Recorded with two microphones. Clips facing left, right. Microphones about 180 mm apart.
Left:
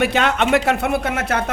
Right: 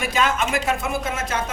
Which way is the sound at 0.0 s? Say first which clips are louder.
Left 4 dB; 65° left (ahead or behind).